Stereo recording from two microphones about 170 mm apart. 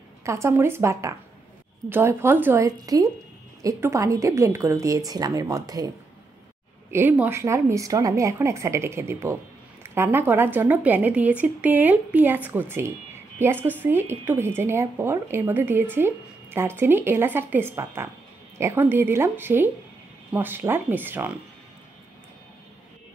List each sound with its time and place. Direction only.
0.2 s a woman's voice: 15° right (ahead or behind)
6.9 s speech: 10° right (ahead or behind)